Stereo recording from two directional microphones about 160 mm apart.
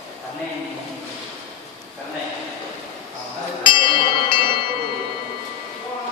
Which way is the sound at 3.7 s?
30° left (ahead or behind).